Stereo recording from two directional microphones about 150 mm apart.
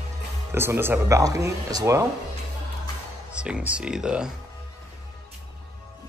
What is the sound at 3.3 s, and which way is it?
Speech, 5° right (ahead or behind).